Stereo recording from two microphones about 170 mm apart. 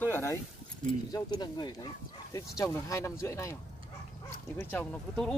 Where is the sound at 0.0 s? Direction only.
15° left (ahead or behind).